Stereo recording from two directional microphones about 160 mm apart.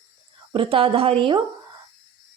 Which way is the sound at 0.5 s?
35° right (ahead or behind).